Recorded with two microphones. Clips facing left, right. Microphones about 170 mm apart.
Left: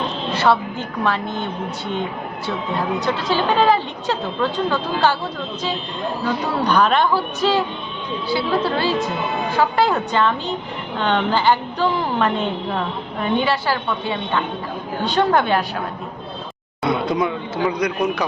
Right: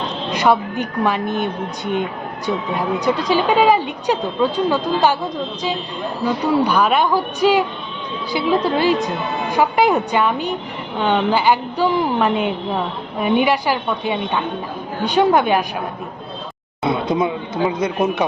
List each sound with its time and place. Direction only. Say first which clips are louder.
0.3 s a woman's voice: right 2 dB; 15° right (ahead or behind)
6.2 s a woman's voice: right 5 dB; 10° right (ahead or behind)
16.8 s speech: right 1 dB; 25° right (ahead or behind)